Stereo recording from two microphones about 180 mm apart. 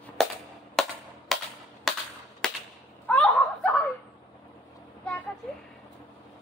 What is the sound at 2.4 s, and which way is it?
Whip, 5° left (ahead or behind).